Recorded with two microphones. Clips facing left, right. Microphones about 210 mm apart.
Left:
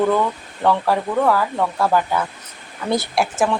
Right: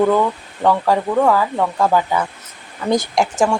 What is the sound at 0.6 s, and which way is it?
A woman's voice, 10° right (ahead or behind).